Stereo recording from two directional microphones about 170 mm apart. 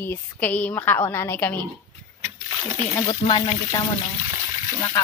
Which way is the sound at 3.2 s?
30° left (ahead or behind).